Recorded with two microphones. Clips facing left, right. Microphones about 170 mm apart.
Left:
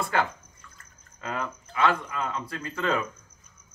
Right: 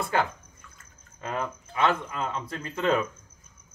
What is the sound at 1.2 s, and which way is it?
Speech, 20° right (ahead or behind).